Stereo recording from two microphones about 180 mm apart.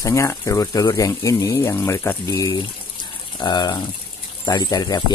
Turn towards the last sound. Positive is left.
turn(degrees=20)  # may be behind; listen again after turning